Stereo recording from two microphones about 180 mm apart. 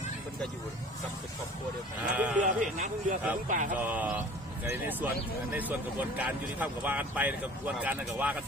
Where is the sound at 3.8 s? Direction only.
10° right (ahead or behind).